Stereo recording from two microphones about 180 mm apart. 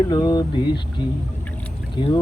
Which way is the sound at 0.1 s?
20° left (ahead or behind).